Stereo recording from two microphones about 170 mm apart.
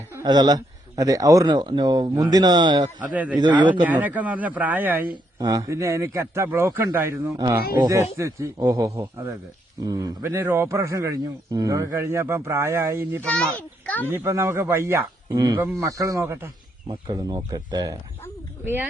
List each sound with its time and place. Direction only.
0.1 s speech: 20° right (ahead or behind)
3.1 s a man's voice: 10° right (ahead or behind)
3.3 s speech: 25° right (ahead or behind)
3.8 s a man's voice: 10° right (ahead or behind)
5.1 s a man's voice: 20° right (ahead or behind)
13.2 s a child's voice: 5° left (ahead or behind)
14.1 s a man's voice: 15° right (ahead or behind)